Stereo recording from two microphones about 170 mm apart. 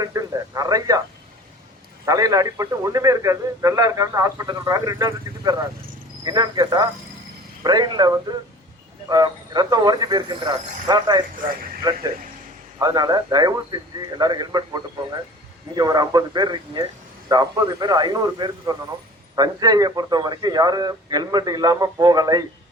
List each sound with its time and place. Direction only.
0.0 s radio: 20° right (ahead or behind)
2.0 s a man's voice: 20° right (ahead or behind)